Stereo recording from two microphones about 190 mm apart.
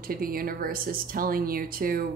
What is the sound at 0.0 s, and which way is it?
Speech, 50° right (ahead or behind).